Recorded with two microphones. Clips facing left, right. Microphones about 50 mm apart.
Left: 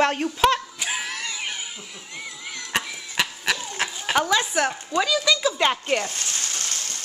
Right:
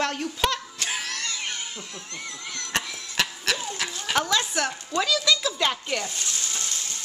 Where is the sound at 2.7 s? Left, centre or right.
Centre.